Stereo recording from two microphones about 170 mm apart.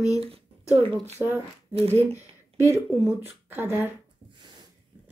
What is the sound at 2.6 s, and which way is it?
Speech, 15° right (ahead or behind).